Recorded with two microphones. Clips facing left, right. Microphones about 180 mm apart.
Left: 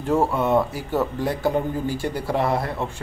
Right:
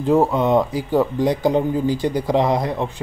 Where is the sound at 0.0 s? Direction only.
15° right (ahead or behind).